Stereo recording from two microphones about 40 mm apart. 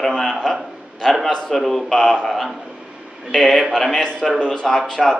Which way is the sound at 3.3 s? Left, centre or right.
Centre.